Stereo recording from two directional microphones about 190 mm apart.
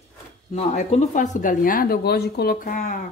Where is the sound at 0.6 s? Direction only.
35° left (ahead or behind).